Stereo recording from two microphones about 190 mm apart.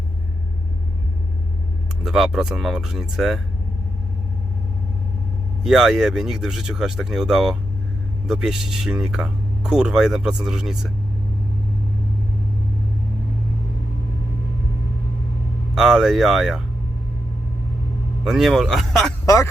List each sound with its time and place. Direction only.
2.0 s speech: centre (ahead or behind)
5.6 s speech: centre (ahead or behind)
15.7 s speech: 5° right (ahead or behind)
18.3 s speech: centre (ahead or behind)
19.2 s speech: 15° left (ahead or behind)